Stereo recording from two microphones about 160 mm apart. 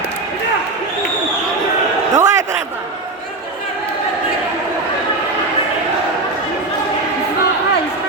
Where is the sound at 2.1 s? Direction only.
20° right (ahead or behind).